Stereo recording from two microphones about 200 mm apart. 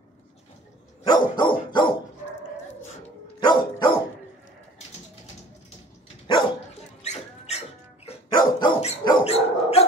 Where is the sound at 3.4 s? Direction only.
20° left (ahead or behind).